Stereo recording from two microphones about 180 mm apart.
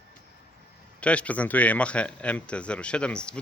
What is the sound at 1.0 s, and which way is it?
Speech, 5° left (ahead or behind).